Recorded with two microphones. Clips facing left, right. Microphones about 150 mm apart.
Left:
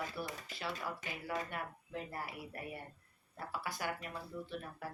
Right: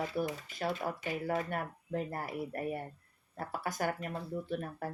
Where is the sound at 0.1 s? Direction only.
45° right (ahead or behind).